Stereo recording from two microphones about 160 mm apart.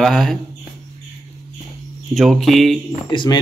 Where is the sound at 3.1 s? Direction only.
30° left (ahead or behind).